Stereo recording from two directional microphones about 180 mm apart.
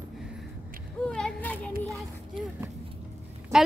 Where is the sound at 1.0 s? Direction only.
5° left (ahead or behind).